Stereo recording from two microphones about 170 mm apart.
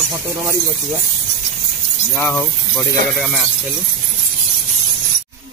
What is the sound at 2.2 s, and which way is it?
Speech, 10° left (ahead or behind).